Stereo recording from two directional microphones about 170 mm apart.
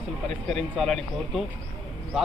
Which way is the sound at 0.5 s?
Centre (ahead or behind).